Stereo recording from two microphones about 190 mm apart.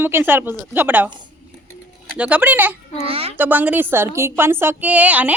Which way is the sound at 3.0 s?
30° right (ahead or behind).